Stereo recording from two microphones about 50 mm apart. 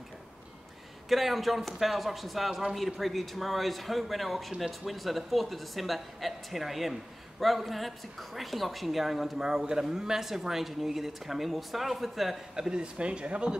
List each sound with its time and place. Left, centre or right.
1.0 s a man's voice: centre
12.5 s speech: centre